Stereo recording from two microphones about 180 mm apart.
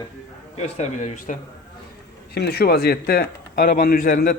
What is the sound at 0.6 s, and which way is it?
Speech, 40° left (ahead or behind).